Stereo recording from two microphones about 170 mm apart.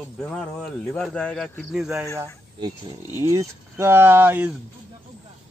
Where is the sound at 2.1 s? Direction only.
20° right (ahead or behind).